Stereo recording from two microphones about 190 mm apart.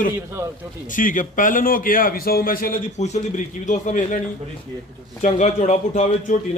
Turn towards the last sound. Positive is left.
turn(degrees=40)  # may be behind; listen again after turning